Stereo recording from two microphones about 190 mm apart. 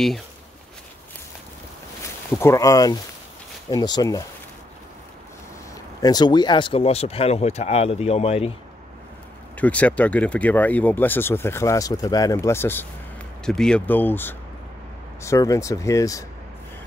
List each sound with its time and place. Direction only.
2.3 s speech: 15° left (ahead or behind)
5.9 s speech: 20° left (ahead or behind)
9.6 s speech: 10° left (ahead or behind)